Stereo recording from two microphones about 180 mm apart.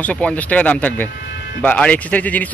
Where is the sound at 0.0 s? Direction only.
5° left (ahead or behind).